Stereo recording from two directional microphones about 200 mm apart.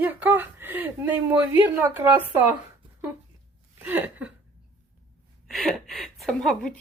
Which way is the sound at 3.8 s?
10° right (ahead or behind).